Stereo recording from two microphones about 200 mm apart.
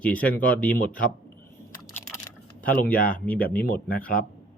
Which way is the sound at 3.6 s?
45° left (ahead or behind).